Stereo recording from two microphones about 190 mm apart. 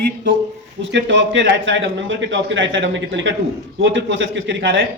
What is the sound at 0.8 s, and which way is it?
A man's voice, 70° right (ahead or behind).